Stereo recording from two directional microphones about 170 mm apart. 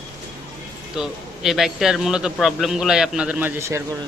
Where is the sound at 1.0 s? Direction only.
Centre (ahead or behind).